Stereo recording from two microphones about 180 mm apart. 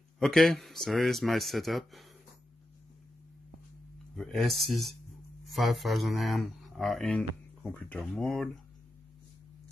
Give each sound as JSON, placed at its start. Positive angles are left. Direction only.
{"t": 0.2, "sound": "speech", "side_deg": 0}
{"t": 4.1, "sound": "speech", "side_deg": 0}